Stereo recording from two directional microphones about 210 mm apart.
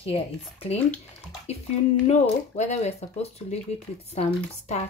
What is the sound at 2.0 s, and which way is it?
Speech, 30° left (ahead or behind).